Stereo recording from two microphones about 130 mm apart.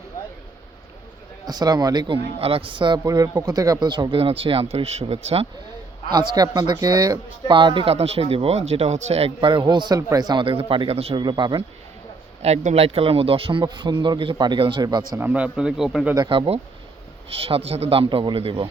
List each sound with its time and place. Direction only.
1.5 s speech: 30° right (ahead or behind)
2.1 s speech: 45° right (ahead or behind)
6.1 s speech: 30° right (ahead or behind)
7.9 s speech: 50° right (ahead or behind)
11.2 s speech: 35° right (ahead or behind)
12.4 s speech: 55° right (ahead or behind); by 15.2 s 30° right (ahead or behind)
15.2 s a man's voice: 10° right (ahead or behind)
16.1 s speech: 35° right (ahead or behind)
17.2 s speech: 45° right (ahead or behind)